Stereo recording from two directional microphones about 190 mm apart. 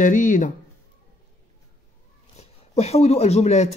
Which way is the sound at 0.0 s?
40° left (ahead or behind).